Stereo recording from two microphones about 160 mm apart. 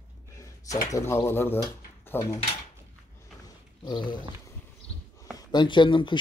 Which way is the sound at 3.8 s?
30° left (ahead or behind).